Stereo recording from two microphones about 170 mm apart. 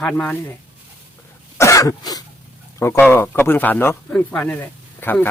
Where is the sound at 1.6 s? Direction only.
20° left (ahead or behind).